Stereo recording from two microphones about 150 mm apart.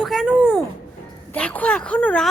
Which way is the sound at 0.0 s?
Centre (ahead or behind).